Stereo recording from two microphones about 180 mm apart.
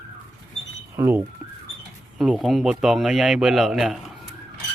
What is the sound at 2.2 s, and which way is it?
Speech, centre (ahead or behind).